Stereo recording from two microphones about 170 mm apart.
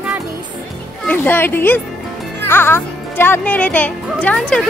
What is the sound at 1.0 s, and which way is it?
Speech, 10° left (ahead or behind).